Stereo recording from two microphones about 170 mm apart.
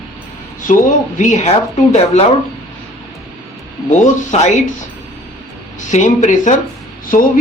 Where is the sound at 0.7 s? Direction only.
45° left (ahead or behind).